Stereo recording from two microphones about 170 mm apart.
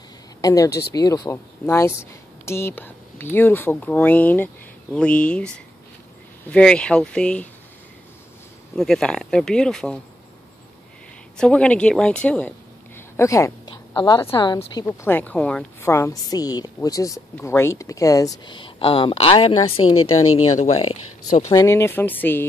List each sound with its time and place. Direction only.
0.4 s speech: 20° left (ahead or behind)
0.7 s speech: 70° left (ahead or behind)
0.9 s a woman's voice: 20° left (ahead or behind); by 5.5 s 5° left (ahead or behind)
6.5 s speech: 5° left (ahead or behind)
8.7 s speech: 5° left (ahead or behind)
11.3 s a woman's voice: 5° left (ahead or behind); by 14.9 s 25° left (ahead or behind)
14.9 s a woman's voice: 10° left (ahead or behind); by 21.5 s 40° left (ahead or behind)
21.5 s speech: 20° left (ahead or behind)